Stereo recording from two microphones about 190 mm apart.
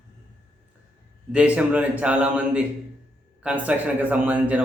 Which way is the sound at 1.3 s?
5° right (ahead or behind).